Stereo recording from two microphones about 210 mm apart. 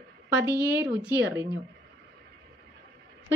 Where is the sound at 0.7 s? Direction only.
10° right (ahead or behind).